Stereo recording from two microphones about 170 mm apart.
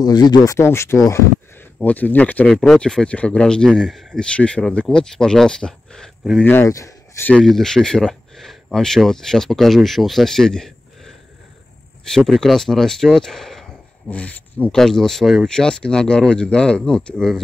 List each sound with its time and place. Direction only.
0.0 s speech: 25° left (ahead or behind); by 6.4 s centre (ahead or behind)
6.4 s speech: 15° left (ahead or behind)
12.3 s speech: centre (ahead or behind)